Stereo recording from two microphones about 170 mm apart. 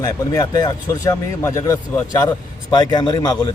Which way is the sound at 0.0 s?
20° left (ahead or behind).